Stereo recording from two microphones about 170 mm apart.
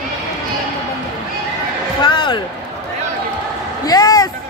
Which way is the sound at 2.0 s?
30° left (ahead or behind).